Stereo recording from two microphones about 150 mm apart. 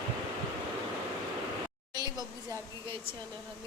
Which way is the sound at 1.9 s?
25° right (ahead or behind).